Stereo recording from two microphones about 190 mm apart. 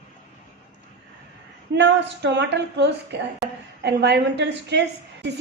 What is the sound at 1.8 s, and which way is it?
A woman's voice, 65° right (ahead or behind).